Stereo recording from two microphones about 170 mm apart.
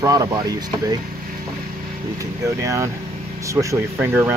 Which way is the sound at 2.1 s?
20° right (ahead or behind).